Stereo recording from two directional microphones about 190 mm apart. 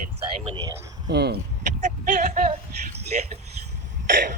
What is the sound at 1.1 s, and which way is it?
Speech, 60° right (ahead or behind).